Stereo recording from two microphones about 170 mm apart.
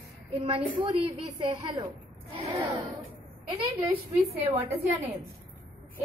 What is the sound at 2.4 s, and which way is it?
Speech, 20° right (ahead or behind).